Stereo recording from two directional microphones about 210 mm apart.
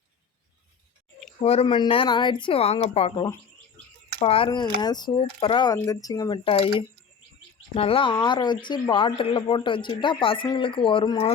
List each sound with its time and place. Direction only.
1.4 s speech: 25° left (ahead or behind)